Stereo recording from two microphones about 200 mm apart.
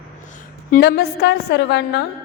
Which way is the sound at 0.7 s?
50° left (ahead or behind).